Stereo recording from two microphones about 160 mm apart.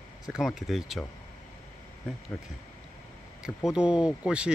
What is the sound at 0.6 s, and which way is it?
Speech, centre (ahead or behind).